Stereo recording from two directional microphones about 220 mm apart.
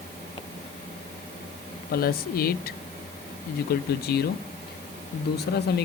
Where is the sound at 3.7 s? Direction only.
45° left (ahead or behind).